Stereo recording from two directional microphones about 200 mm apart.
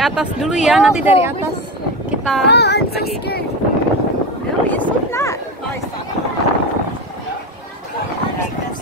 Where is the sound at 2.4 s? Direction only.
55° left (ahead or behind).